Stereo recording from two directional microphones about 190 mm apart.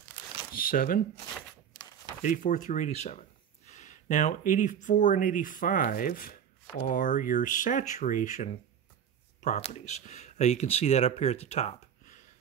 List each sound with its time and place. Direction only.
0.5 s speech: 50° left (ahead or behind)
2.2 s speech: 45° left (ahead or behind)